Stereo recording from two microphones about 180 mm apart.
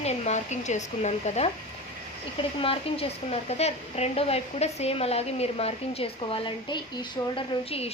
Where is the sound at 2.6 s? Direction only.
30° left (ahead or behind).